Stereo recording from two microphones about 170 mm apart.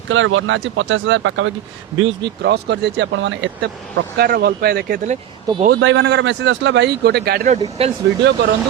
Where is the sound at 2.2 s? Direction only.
90° right.